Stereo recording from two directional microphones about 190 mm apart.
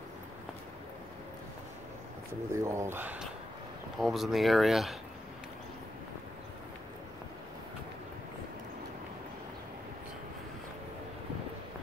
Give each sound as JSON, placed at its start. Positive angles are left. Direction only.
{"t": 2.5, "sound": "speech", "side_deg": -15}